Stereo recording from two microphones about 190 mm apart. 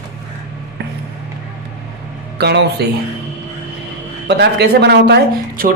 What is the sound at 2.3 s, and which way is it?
Speech, 60° right (ahead or behind).